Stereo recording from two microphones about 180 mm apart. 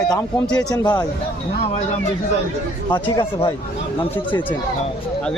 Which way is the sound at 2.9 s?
25° left (ahead or behind).